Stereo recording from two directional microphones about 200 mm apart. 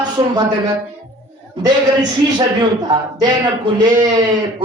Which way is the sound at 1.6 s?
20° right (ahead or behind).